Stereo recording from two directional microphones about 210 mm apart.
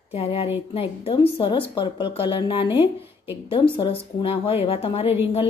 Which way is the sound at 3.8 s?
25° left (ahead or behind).